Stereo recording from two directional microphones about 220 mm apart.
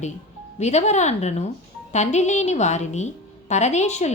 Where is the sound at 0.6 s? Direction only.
30° left (ahead or behind).